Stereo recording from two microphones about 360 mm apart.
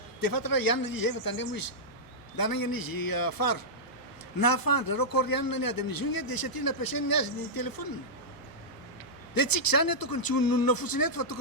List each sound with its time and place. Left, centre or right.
0.2 s a man's voice: left
9.3 s a man's voice: left